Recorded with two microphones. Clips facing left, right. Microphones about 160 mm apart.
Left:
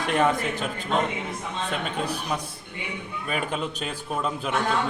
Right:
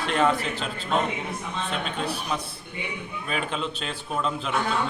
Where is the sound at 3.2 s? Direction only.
10° left (ahead or behind).